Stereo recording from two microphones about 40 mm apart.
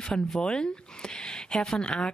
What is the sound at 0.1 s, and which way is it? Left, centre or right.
Speech, centre.